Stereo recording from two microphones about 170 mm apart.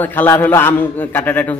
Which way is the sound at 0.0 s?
10° left (ahead or behind).